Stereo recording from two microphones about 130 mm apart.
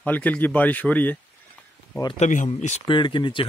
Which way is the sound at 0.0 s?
10° left (ahead or behind).